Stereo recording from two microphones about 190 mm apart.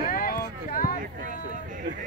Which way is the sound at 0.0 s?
50° left (ahead or behind).